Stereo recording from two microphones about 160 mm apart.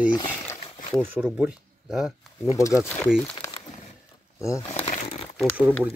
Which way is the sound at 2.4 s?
20° left (ahead or behind).